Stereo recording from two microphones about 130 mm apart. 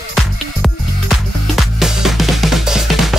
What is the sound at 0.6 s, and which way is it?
Music, centre (ahead or behind).